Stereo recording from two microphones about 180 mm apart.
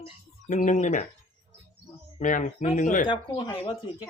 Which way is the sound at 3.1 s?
25° left (ahead or behind).